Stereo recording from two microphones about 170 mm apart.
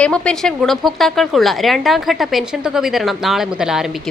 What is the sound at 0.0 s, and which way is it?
A woman's voice, 5° left (ahead or behind).